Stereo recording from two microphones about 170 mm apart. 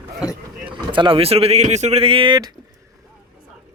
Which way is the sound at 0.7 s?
30° right (ahead or behind).